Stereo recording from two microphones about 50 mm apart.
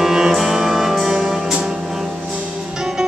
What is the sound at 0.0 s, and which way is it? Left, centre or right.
Music, centre.